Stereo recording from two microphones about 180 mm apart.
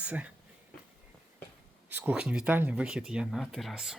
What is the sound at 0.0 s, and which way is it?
Speech, 5° right (ahead or behind).